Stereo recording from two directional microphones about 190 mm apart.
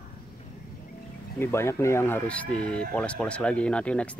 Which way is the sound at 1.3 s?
15° left (ahead or behind).